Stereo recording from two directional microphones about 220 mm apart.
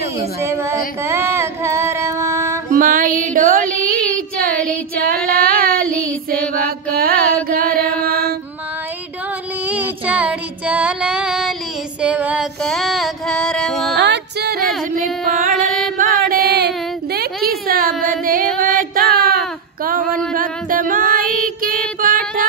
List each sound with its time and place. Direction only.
0.4 s a woman's voice: 10° right (ahead or behind)
1.0 s a sound: 10° right (ahead or behind)
2.7 s carnatic music: 40° right (ahead or behind)
4.9 s child singing: 40° right (ahead or behind)
5.9 s mantra: 5° left (ahead or behind)
7.4 s mantra: 40° right (ahead or behind)
9.7 s child singing: 5° right (ahead or behind)
12.0 s female singing: 5° right (ahead or behind)
13.9 s music: 50° right (ahead or behind)
15.0 s female singing: 35° right (ahead or behind)
16.0 s a sound: 40° right (ahead or behind)
18.6 s female singing: 40° right (ahead or behind)